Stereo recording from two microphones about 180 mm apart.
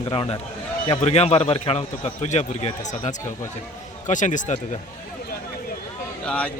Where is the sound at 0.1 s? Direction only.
30° left (ahead or behind).